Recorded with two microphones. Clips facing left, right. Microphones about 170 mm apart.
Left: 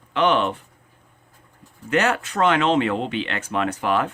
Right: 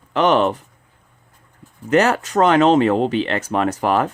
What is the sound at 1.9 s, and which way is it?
Speech, 40° right (ahead or behind).